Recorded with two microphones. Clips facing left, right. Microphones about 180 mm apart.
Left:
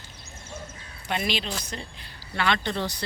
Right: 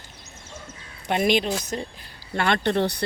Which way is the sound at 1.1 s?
50° right (ahead or behind).